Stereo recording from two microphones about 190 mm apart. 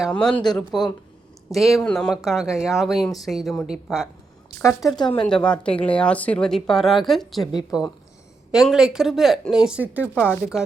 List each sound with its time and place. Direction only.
0.0 s speech: 5° left (ahead or behind)
4.9 s speech: 25° left (ahead or behind)
5.2 s speech: 5° left (ahead or behind)
10.2 s speech: 10° left (ahead or behind)